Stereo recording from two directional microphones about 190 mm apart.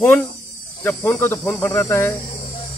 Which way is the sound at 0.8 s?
10° left (ahead or behind).